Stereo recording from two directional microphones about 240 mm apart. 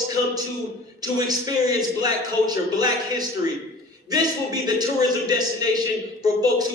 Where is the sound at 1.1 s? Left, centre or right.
Centre.